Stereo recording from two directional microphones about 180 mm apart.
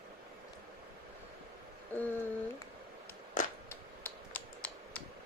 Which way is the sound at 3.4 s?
45° left (ahead or behind).